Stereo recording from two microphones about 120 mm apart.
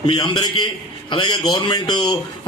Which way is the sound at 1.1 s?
40° left (ahead or behind).